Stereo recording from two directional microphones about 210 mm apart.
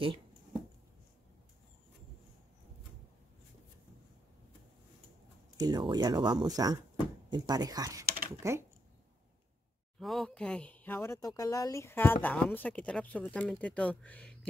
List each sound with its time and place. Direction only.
5.6 s speech: 20° right (ahead or behind)
8.0 s typing: 45° right (ahead or behind)
8.4 s speech: 15° right (ahead or behind)
9.9 s speech: centre (ahead or behind)